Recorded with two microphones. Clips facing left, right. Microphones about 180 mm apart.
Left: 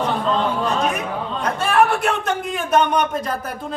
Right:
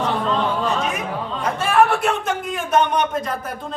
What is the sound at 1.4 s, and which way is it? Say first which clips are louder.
A man's voice: even; centre (ahead or behind).